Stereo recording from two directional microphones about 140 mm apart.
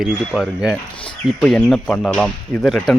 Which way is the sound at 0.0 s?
Centre (ahead or behind).